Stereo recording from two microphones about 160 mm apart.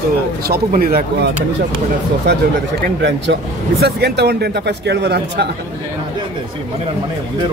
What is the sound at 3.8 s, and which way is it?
Speech, 90° right.